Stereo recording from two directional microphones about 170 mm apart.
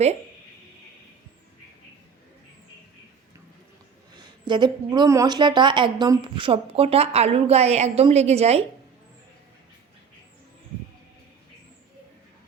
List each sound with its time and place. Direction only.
4.1 s a woman's voice: 25° right (ahead or behind)